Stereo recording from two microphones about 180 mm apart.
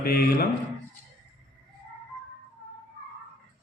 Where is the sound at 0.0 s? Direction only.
55° left (ahead or behind).